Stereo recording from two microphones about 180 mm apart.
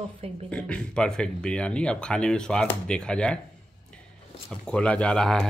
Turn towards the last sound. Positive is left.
turn(degrees=5)  # may be behind; listen again after turning